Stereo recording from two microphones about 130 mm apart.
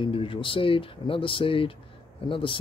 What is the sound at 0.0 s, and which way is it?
Speech, 40° left (ahead or behind).